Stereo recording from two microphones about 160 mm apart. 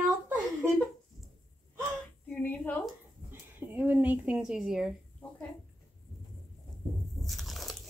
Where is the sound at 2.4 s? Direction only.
10° left (ahead or behind).